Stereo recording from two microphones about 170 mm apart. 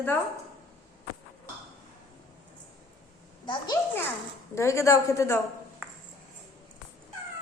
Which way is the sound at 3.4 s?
25° left (ahead or behind).